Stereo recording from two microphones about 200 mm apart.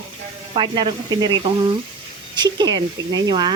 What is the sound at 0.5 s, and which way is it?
Speech, 25° right (ahead or behind).